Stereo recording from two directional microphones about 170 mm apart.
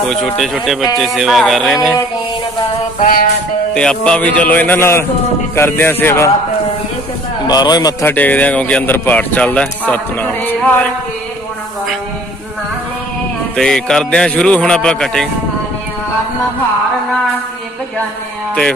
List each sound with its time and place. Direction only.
0.1 s a man's voice: centre (ahead or behind)
3.0 s a sound: 55° left (ahead or behind)
3.7 s speech: 5° left (ahead or behind)
7.4 s a man's voice: 25° left (ahead or behind)
8.0 s speech: 10° left (ahead or behind)
13.6 s a man's voice: 5° left (ahead or behind)
18.5 s a sound: 5° left (ahead or behind)